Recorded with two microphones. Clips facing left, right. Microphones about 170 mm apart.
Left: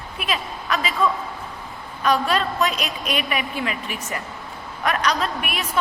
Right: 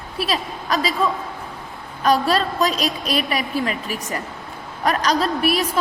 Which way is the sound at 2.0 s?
35° right (ahead or behind).